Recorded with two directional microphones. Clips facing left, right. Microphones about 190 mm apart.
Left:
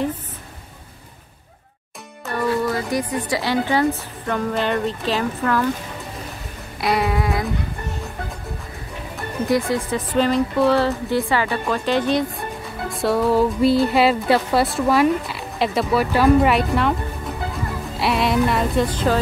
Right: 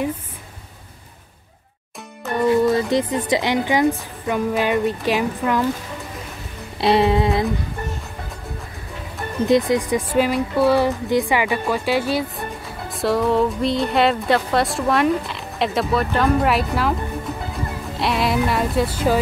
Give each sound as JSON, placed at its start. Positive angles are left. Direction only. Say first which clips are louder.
{"t": 2.2, "sound": "speech", "louder": "right 5 dB", "side_deg": -20}
{"t": 6.8, "sound": "music", "louder": "right 4 dB", "side_deg": -25}
{"t": 9.5, "sound": "speech", "louder": "right 3 dB", "side_deg": -15}
{"t": 17.9, "sound": "speech", "louder": "left 1 dB", "side_deg": 0}